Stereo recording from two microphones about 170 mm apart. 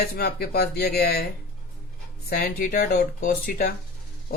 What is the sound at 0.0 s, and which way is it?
Speech, 65° left (ahead or behind).